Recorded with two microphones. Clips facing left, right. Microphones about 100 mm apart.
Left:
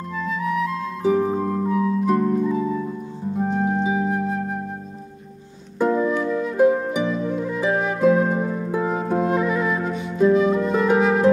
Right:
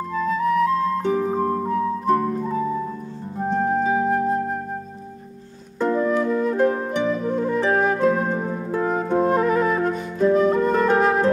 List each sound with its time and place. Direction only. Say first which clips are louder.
0.2 s music: right 4 dB; 40° right (ahead or behind)
1.0 s music: left 2 dB; centre (ahead or behind)
1.6 s music: left 1 dB; 40° right (ahead or behind)
2.0 s harp: right 1 dB; centre (ahead or behind)
3.3 s music: right 1 dB; centre (ahead or behind)
3.9 s flute: right 3 dB; 40° right (ahead or behind)
5.8 s music: even; 5° left (ahead or behind)
7.2 s music: right 3 dB; 45° right (ahead or behind)
7.7 s flute: right 3 dB; 45° right (ahead or behind)
8.0 s music: left 2 dB; 5° left (ahead or behind)
9.3 s music: right 2 dB; 45° right (ahead or behind)
9.8 s music: left 1 dB; centre (ahead or behind)